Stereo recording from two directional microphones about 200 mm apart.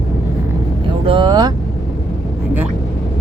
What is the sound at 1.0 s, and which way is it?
Speech, 25° right (ahead or behind).